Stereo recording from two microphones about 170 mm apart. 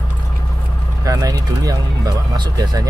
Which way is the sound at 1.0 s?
20° right (ahead or behind).